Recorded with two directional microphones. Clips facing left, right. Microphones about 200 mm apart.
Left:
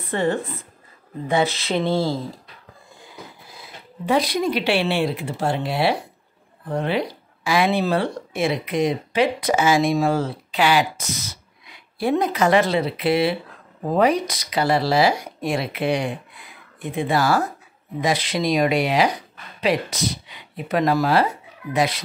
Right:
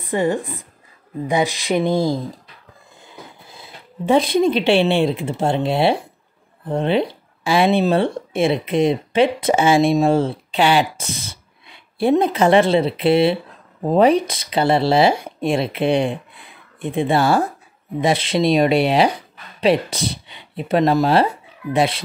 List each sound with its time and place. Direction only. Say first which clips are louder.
0.0 s speech: right 3 dB; 15° right (ahead or behind)
3.4 s speech: right 1 dB; 25° right (ahead or behind)